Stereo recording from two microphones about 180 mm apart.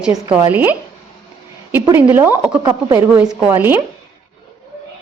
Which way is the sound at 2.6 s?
25° right (ahead or behind).